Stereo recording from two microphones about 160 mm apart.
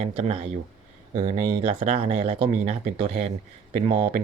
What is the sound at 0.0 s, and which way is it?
Speech, 40° right (ahead or behind).